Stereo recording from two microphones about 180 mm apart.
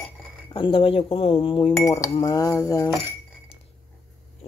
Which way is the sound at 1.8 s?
20° left (ahead or behind).